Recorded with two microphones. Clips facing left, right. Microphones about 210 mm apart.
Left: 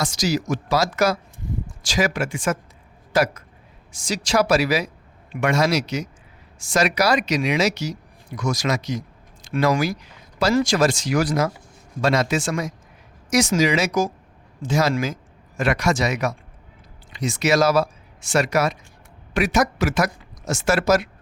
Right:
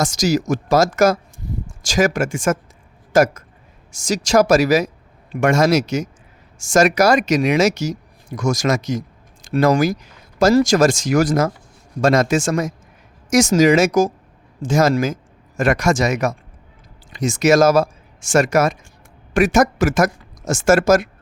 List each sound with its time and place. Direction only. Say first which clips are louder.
0.0 s speech: right 5 dB; 45° right (ahead or behind)